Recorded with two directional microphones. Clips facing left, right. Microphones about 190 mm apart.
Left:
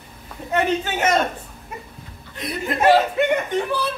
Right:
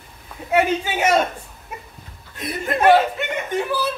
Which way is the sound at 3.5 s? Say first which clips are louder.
Even; 5° right (ahead or behind).